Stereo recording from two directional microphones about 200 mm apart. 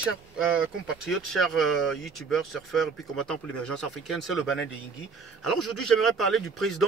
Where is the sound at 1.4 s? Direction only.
Centre (ahead or behind).